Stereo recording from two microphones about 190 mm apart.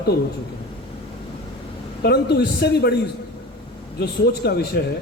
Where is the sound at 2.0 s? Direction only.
60° left (ahead or behind).